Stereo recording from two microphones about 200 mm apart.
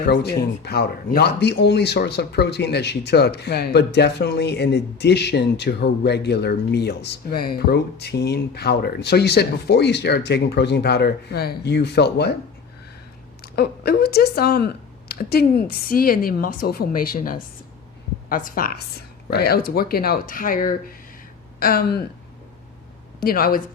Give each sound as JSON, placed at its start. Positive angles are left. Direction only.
{"t": 0.1, "sound": "speech", "side_deg": 55}
{"t": 13.4, "sound": "a woman's voice", "side_deg": 55}
{"t": 23.2, "sound": "a woman's voice", "side_deg": 50}